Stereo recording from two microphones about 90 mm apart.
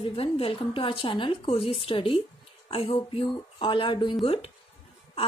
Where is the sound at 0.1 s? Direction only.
90° left; by 4.2 s 65° left (ahead or behind).